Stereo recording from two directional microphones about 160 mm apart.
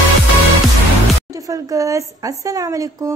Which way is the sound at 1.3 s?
20° right (ahead or behind).